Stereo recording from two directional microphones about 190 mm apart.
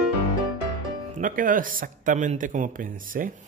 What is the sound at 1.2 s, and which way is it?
Speech, 45° right (ahead or behind).